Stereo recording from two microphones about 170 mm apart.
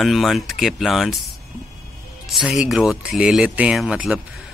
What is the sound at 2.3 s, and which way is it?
Speech, 5° right (ahead or behind).